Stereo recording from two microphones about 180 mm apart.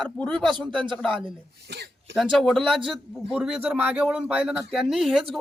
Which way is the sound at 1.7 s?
65° right (ahead or behind).